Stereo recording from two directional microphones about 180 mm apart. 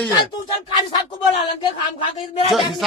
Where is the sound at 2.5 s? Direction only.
Centre (ahead or behind).